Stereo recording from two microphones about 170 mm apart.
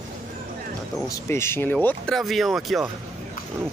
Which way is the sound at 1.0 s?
15° left (ahead or behind).